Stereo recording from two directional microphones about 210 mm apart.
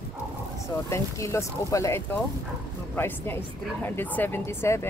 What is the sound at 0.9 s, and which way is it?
A woman's voice, 15° left (ahead or behind).